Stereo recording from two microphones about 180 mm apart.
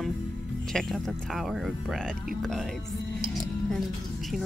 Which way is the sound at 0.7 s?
Centre (ahead or behind).